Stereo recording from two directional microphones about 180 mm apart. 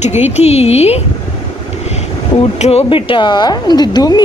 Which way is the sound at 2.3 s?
35° left (ahead or behind).